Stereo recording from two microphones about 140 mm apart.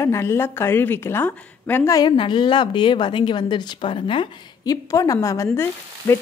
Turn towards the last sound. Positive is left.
turn(degrees=15)  # may be behind; listen again after turning